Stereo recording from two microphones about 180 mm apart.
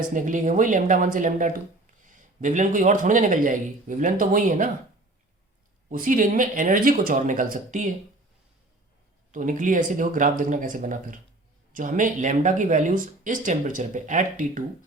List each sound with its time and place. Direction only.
0.1 s speech: 45° right (ahead or behind)
5.9 s speech: 50° right (ahead or behind)
9.3 s speech: 45° right (ahead or behind)